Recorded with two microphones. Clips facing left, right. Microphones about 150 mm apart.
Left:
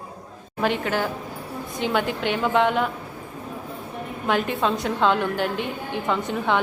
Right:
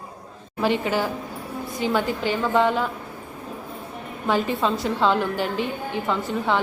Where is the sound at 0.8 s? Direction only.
10° right (ahead or behind).